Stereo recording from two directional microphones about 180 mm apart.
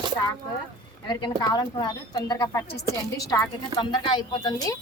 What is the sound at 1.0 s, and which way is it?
Speech, 20° left (ahead or behind).